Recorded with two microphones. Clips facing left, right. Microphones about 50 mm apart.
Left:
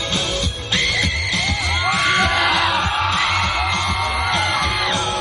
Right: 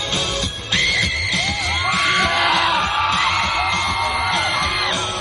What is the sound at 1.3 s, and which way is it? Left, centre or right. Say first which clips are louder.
Music: even; centre.